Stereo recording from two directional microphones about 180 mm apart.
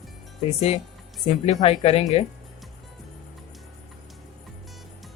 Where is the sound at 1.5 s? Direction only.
35° left (ahead or behind).